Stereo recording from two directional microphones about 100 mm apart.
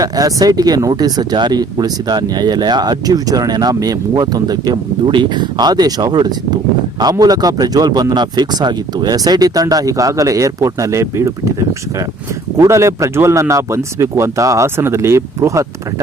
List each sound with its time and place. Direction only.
0.0 s speech: 35° right (ahead or behind)
12.5 s a man's voice: 30° right (ahead or behind)